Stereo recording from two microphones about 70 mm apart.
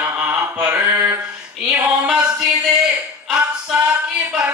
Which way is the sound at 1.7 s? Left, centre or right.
Centre.